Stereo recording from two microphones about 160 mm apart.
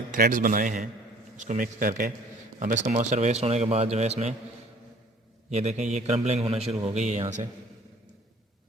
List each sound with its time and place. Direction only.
0.1 s a man's voice: 60° right (ahead or behind); by 4.4 s 40° right (ahead or behind)
5.5 s a man's voice: 40° right (ahead or behind)